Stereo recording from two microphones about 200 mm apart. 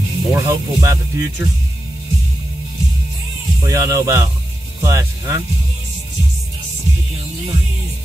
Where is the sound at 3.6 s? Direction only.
15° right (ahead or behind).